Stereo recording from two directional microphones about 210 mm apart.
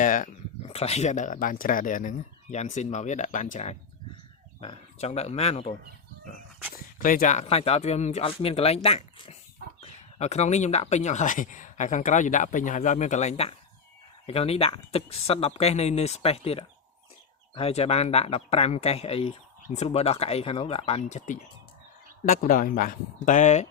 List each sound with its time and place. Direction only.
0.0 s speech: 40° left (ahead or behind)
6.7 s speech: 40° left (ahead or behind)